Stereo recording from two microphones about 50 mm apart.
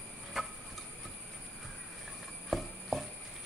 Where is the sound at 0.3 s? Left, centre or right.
Centre.